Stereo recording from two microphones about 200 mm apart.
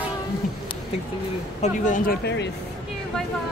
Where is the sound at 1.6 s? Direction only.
40° left (ahead or behind).